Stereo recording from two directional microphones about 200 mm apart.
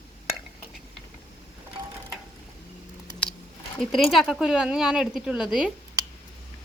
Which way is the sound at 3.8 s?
Centre (ahead or behind).